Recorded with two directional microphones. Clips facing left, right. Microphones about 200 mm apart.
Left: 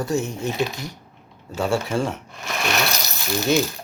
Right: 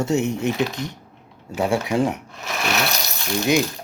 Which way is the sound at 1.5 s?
15° right (ahead or behind).